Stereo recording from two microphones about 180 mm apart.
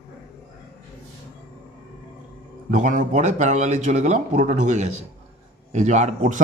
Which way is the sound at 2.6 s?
45° right (ahead or behind).